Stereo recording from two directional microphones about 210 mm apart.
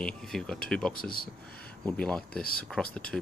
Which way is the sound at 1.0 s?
45° left (ahead or behind).